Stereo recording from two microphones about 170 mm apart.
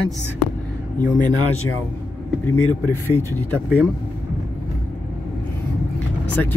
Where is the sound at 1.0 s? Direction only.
50° left (ahead or behind).